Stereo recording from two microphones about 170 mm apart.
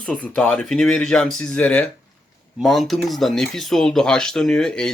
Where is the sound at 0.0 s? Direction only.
5° left (ahead or behind).